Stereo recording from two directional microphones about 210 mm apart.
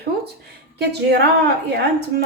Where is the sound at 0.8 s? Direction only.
50° right (ahead or behind).